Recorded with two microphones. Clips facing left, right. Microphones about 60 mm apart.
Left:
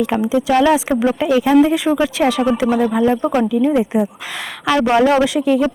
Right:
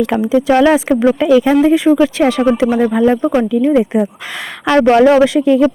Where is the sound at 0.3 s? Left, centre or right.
Right.